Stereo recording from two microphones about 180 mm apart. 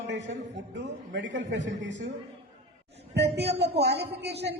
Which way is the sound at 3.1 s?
70° right (ahead or behind).